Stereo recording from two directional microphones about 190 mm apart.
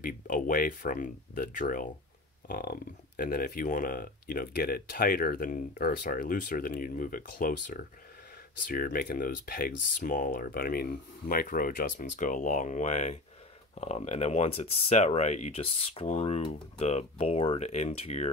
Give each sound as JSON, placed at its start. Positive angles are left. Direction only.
{"t": 0.0, "sound": "speech", "side_deg": 50}